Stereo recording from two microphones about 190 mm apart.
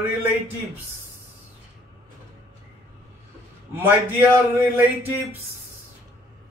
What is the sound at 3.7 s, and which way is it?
Speech, 10° right (ahead or behind).